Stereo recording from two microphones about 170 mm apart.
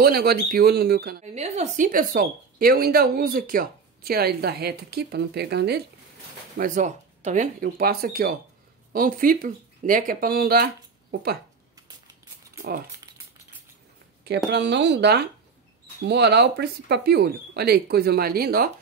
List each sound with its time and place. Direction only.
0.0 s speech: 65° right (ahead or behind)
1.2 s speech: 40° right (ahead or behind); by 5.8 s 75° right (ahead or behind)
6.6 s speech: 45° right (ahead or behind); by 11.3 s 65° right (ahead or behind)
14.2 s speech: 85° right; by 18.7 s 65° right (ahead or behind)